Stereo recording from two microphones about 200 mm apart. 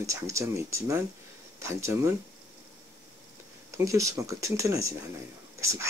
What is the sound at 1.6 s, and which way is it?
Speech, 15° right (ahead or behind).